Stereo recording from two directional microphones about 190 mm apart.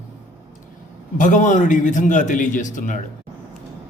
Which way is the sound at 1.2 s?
40° left (ahead or behind).